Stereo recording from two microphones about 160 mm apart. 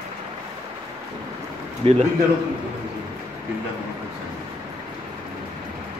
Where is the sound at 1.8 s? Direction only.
35° right (ahead or behind).